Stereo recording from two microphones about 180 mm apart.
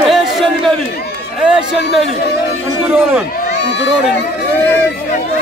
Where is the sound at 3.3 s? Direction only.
65° left (ahead or behind).